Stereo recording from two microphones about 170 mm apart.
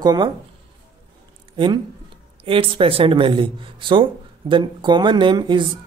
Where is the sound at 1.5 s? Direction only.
25° right (ahead or behind).